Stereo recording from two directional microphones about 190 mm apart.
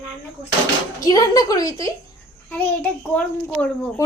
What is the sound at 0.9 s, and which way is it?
A woman's voice, 20° left (ahead or behind).